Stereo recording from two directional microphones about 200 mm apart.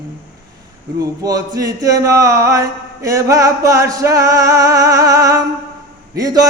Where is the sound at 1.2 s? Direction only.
15° right (ahead or behind).